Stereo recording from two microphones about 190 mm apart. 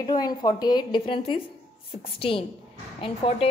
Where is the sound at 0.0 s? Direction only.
20° left (ahead or behind).